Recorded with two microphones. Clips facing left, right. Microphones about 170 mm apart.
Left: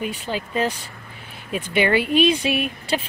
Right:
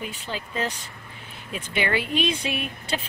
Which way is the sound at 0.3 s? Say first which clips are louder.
Left 5 dB; 40° left (ahead or behind).